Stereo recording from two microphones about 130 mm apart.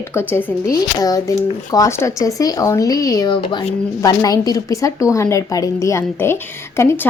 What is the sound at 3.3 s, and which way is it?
A woman's voice, 35° left (ahead or behind).